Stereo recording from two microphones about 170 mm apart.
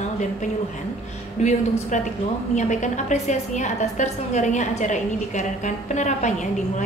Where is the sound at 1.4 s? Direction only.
45° left (ahead or behind).